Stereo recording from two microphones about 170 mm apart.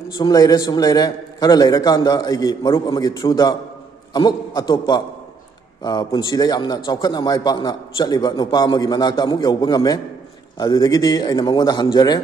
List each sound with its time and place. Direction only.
0.2 s a man's voice: 20° left (ahead or behind)